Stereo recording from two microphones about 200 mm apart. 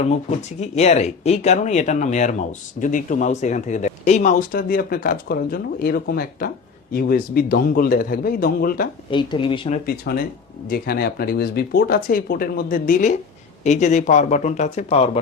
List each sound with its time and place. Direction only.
0.0 s speech: 35° left (ahead or behind)
9.0 s speech: 25° left (ahead or behind)
9.8 s speech: 50° left (ahead or behind); by 15.2 s 30° left (ahead or behind)